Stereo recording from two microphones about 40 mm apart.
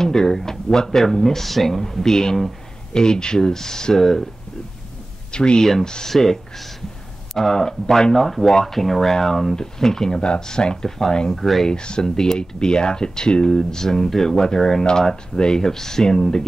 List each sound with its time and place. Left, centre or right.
0.0 s speech: centre
5.3 s speech: left
6.0 s speech: centre
10.2 s speech: left